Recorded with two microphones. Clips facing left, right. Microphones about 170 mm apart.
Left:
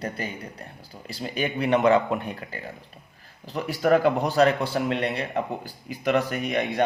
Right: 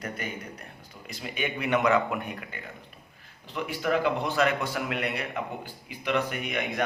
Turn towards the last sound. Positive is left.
turn(degrees=40)  # may be behind; listen again after turning